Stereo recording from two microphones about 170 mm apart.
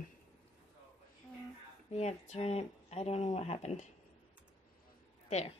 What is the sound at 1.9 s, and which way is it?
Speech, 40° left (ahead or behind).